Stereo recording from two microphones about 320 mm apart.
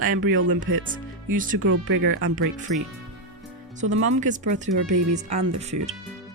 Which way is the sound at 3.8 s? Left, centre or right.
Right.